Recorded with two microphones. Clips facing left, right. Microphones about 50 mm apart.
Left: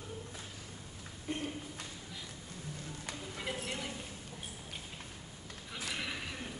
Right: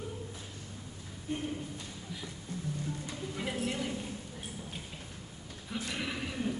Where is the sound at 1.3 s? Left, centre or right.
Left.